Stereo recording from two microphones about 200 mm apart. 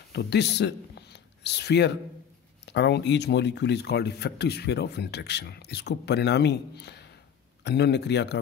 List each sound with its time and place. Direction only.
0.1 s speech: 55° left (ahead or behind)